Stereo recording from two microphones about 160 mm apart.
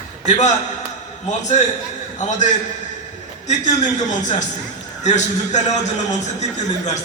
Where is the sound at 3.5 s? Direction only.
50° left (ahead or behind).